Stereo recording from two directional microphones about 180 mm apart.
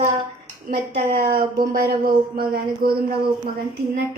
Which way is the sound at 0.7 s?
55° right (ahead or behind).